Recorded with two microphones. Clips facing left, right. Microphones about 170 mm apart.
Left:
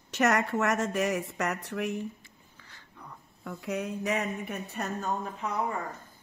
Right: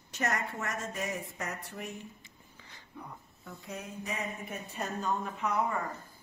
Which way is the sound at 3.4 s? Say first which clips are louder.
Left 10 dB; 75° left (ahead or behind).